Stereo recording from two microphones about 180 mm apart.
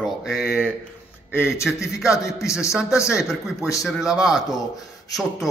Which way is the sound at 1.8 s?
15° left (ahead or behind).